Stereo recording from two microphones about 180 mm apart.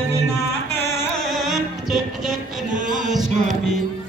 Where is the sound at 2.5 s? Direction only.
45° right (ahead or behind).